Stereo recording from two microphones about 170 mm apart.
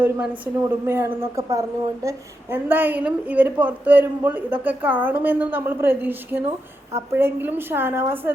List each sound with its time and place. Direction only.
0.0 s a woman's voice: 10° right (ahead or behind)